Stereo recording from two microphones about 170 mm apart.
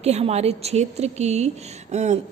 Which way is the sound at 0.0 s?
40° right (ahead or behind).